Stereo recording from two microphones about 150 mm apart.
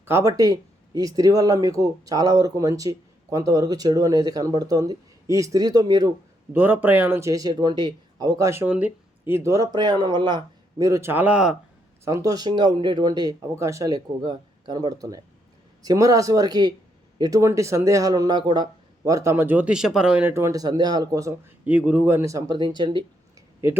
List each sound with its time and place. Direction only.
0.0 s speech: 15° right (ahead or behind)
6.5 s speech: 10° right (ahead or behind)
12.0 s speech: 20° right (ahead or behind)
21.6 s speech: 10° right (ahead or behind); by 23.0 s 30° right (ahead or behind)